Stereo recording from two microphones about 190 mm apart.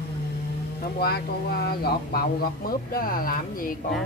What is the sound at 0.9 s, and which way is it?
Speech, 55° left (ahead or behind).